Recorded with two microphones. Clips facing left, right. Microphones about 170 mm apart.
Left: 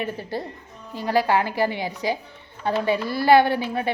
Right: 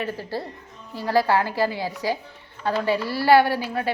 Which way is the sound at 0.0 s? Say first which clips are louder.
Even; 20° left (ahead or behind).